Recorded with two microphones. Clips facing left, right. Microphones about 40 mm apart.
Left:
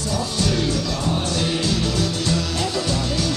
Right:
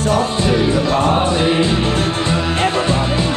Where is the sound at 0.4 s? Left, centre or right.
Right.